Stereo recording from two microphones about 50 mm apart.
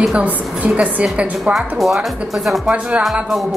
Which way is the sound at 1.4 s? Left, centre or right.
Centre.